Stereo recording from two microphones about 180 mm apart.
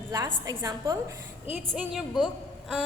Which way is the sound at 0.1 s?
20° right (ahead or behind).